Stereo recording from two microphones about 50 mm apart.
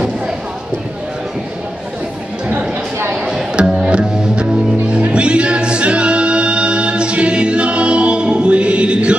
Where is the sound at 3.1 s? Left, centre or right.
Centre.